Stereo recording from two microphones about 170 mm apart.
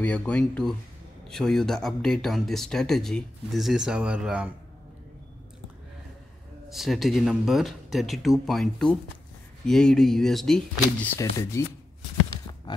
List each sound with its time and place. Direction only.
0.0 s speech: 10° left (ahead or behind)
6.7 s speech: centre (ahead or behind)
11.1 s speech: 20° left (ahead or behind)
12.7 s a sound: 25° left (ahead or behind)